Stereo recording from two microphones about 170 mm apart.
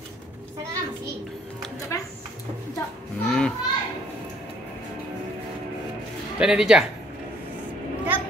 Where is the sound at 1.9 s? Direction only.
20° left (ahead or behind).